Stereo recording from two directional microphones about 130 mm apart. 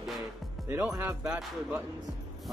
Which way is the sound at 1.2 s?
10° right (ahead or behind).